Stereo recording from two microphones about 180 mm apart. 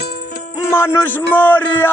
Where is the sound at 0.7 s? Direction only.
15° left (ahead or behind).